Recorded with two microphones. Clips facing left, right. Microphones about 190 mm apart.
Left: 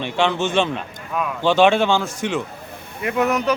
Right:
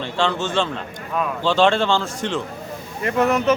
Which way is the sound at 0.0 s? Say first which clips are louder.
Left 2 dB; 20° left (ahead or behind).